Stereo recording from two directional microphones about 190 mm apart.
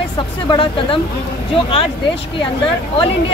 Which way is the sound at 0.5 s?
25° left (ahead or behind).